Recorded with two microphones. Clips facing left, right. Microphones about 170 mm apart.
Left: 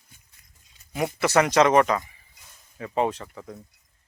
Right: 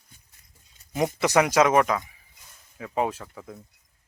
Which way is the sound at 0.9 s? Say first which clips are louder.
Even; 20° right (ahead or behind).